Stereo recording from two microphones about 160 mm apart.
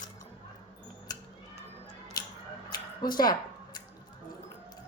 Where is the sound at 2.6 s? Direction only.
25° left (ahead or behind).